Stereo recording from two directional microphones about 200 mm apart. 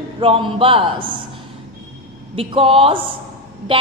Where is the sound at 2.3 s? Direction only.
30° right (ahead or behind).